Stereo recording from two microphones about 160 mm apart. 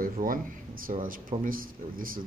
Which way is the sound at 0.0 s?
60° right (ahead or behind).